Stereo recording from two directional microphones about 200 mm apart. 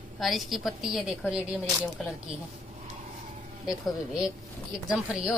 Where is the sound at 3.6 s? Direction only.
5° right (ahead or behind).